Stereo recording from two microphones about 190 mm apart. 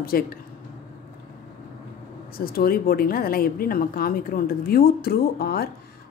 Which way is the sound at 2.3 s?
50° left (ahead or behind).